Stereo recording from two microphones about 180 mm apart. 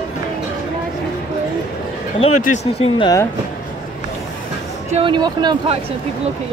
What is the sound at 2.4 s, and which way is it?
Speech, 40° left (ahead or behind).